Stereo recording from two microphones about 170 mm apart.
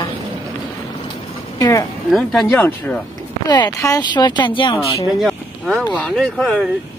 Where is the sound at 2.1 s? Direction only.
5° left (ahead or behind).